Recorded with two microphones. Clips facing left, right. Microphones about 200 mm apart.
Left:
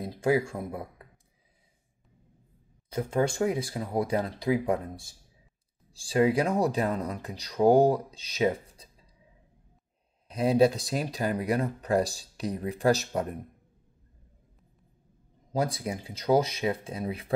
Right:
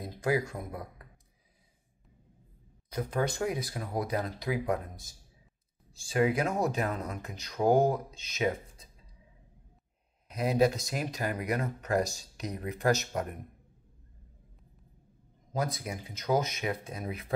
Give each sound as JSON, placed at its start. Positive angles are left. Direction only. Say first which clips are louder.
{"t": 0.0, "sound": "speech", "louder": "left 4 dB", "side_deg": 25}
{"t": 2.9, "sound": "speech", "louder": "left 4 dB", "side_deg": 25}
{"t": 10.2, "sound": "speech", "louder": "left 4 dB", "side_deg": 30}
{"t": 15.5, "sound": "speech", "louder": "left 4 dB", "side_deg": 30}